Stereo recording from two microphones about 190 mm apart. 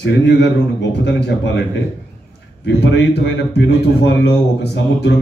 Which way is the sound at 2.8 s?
70° left (ahead or behind).